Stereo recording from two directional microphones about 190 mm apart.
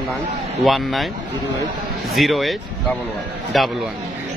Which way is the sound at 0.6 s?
Centre (ahead or behind).